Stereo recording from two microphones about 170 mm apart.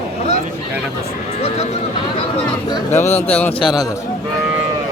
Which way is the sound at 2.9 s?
40° left (ahead or behind).